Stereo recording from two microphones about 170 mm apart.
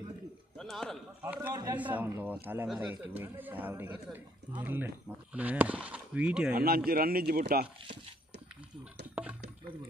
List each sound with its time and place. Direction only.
0.6 s a sound: 5° left (ahead or behind)
1.2 s a man's voice: 10° right (ahead or behind)
1.5 s a man's voice: 25° right (ahead or behind)
1.8 s a man's voice: 10° right (ahead or behind)
6.5 s speech: 60° right (ahead or behind)
9.1 s a sound: 10° right (ahead or behind)